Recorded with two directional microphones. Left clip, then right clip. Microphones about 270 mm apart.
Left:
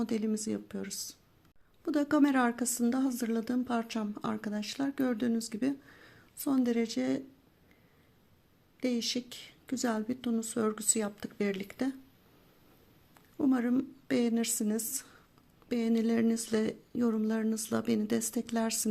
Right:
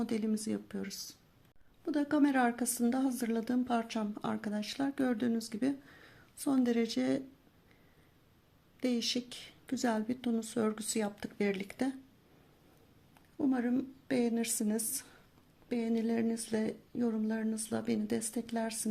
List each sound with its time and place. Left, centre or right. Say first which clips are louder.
0.0 s a woman's voice: left 2 dB; centre
8.8 s a woman's voice: left 1 dB; centre
13.4 s a woman's voice: left 3 dB; centre